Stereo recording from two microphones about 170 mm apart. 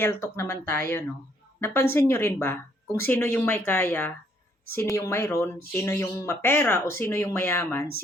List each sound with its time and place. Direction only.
0.0 s speech: 15° left (ahead or behind)